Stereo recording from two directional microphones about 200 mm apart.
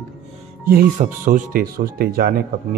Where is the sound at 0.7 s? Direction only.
45° right (ahead or behind).